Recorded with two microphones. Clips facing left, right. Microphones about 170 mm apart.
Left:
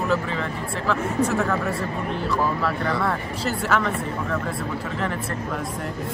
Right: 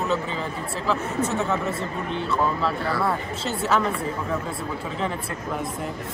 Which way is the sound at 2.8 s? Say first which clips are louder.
Left 1 dB; centre (ahead or behind).